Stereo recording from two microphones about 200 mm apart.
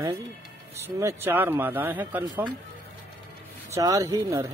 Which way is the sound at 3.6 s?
15° right (ahead or behind).